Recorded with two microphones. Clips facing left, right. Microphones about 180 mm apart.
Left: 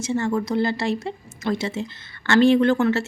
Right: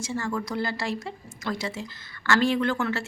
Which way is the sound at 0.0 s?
25° left (ahead or behind).